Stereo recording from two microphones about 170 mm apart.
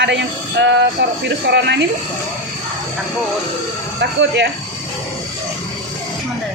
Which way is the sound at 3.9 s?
90° right.